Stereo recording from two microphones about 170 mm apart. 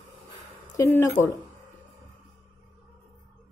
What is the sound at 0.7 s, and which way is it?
Speech, 15° left (ahead or behind).